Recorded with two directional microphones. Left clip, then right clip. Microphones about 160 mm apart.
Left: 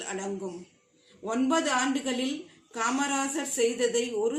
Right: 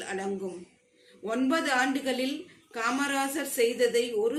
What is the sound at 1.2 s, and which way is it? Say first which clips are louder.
A woman's voice: left 1 dB; 45° left (ahead or behind).